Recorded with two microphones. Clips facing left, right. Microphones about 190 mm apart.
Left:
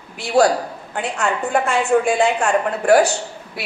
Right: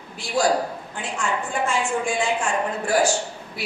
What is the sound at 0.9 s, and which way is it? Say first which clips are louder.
A woman's voice: left 7 dB; 65° left (ahead or behind).